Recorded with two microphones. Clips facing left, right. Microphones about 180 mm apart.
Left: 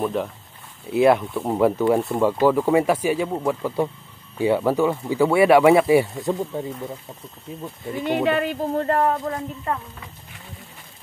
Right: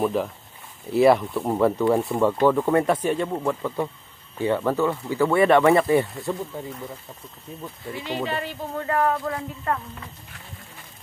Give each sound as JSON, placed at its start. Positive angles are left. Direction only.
{"t": 0.0, "sound": "speech", "side_deg": 0}
{"t": 7.9, "sound": "speech", "side_deg": 55}
{"t": 9.0, "sound": "speech", "side_deg": 25}